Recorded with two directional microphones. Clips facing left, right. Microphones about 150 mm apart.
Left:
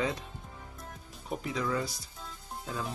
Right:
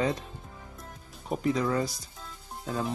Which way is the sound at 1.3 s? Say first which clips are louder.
Right 5 dB; 40° right (ahead or behind).